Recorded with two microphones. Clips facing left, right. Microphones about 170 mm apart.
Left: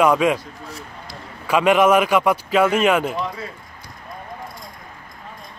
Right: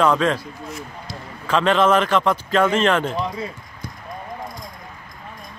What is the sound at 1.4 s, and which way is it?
A man's voice, 10° left (ahead or behind).